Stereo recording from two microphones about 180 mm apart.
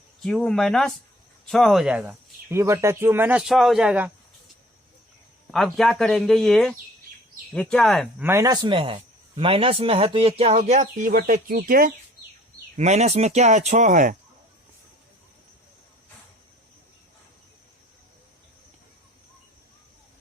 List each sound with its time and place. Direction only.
0.2 s speech: centre (ahead or behind)
5.5 s speech: centre (ahead or behind)
8.2 s speech: 15° right (ahead or behind)
8.6 s speech: 30° right (ahead or behind); by 11.9 s 50° right (ahead or behind)
12.7 s speech: 40° right (ahead or behind)